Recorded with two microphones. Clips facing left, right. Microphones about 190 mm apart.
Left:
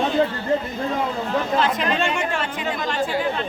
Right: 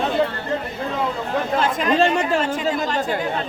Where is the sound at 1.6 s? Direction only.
45° right (ahead or behind).